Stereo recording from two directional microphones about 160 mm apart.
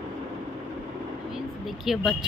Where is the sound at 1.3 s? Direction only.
Centre (ahead or behind).